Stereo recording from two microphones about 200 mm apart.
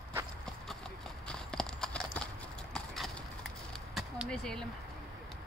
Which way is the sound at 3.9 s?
Centre (ahead or behind).